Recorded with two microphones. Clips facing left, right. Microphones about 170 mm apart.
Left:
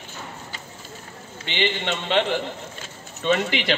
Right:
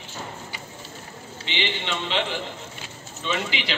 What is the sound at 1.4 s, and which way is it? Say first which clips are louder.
Speech: left 4 dB; 50° left (ahead or behind).